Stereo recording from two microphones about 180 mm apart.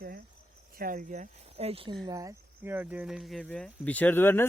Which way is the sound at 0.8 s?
50° right (ahead or behind).